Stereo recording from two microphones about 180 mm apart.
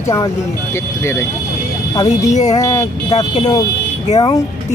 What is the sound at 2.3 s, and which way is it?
Speech, 40° left (ahead or behind).